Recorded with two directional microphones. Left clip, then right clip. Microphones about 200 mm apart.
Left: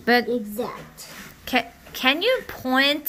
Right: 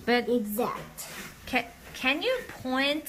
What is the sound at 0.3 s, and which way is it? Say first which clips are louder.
Speech: left 1 dB; 40° right (ahead or behind).